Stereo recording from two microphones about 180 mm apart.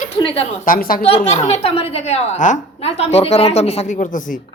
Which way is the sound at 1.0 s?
35° left (ahead or behind).